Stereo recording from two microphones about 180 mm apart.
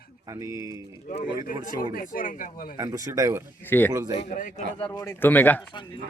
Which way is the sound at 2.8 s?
20° right (ahead or behind).